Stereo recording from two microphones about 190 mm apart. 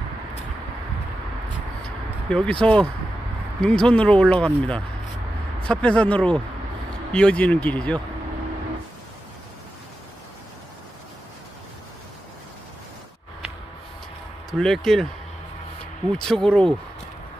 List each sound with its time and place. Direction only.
2.2 s speech: 5° left (ahead or behind)
5.6 s speech: 5° left (ahead or behind)
14.6 s speech: centre (ahead or behind)
16.1 s speech: 5° left (ahead or behind)